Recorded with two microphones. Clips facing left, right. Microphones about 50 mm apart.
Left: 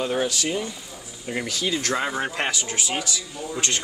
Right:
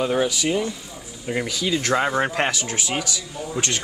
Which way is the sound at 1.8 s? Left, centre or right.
Right.